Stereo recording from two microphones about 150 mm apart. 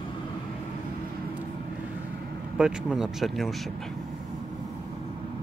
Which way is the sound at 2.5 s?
5° right (ahead or behind).